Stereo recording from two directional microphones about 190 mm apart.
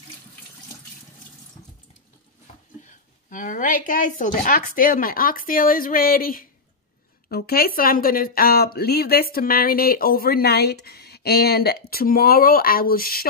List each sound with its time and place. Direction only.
3.3 s speech: 45° left (ahead or behind)